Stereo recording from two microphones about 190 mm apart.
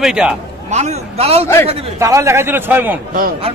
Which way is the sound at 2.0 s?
15° right (ahead or behind).